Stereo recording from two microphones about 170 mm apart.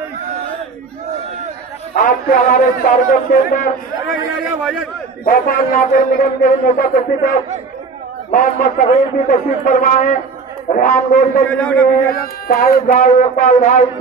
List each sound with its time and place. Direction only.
2.0 s a man's voice: 55° left (ahead or behind)
5.2 s a man's voice: 55° left (ahead or behind)
11.5 s a man's voice: 5° left (ahead or behind)
12.1 s a man's voice: 60° left (ahead or behind)